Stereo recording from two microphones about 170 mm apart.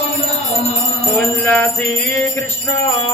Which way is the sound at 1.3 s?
10° left (ahead or behind).